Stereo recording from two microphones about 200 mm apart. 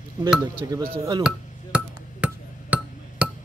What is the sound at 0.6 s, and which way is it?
Speech, 15° right (ahead or behind).